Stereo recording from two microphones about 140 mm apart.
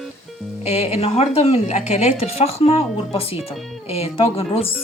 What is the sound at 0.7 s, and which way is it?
A woman's voice, 45° left (ahead or behind).